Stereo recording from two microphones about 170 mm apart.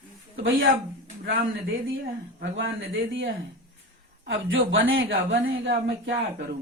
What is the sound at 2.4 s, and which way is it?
Speech, 90° right.